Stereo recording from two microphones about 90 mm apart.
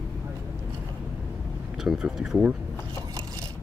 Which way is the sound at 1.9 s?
5° right (ahead or behind).